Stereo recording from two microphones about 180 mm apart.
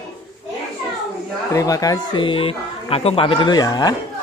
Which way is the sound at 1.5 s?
20° left (ahead or behind).